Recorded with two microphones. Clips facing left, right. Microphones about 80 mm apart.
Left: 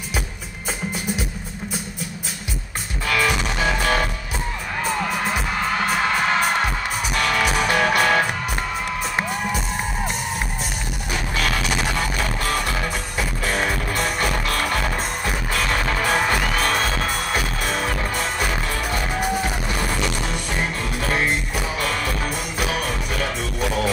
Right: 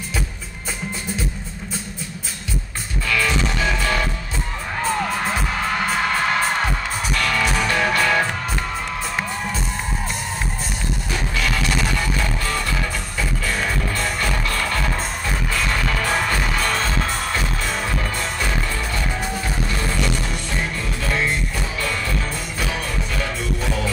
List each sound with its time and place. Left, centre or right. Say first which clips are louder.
3.1 s music: even; left
5.1 s music: even; centre
7.2 s music: left 1 dB; centre
11.7 s music: even; centre
21.0 s music: left 1 dB; centre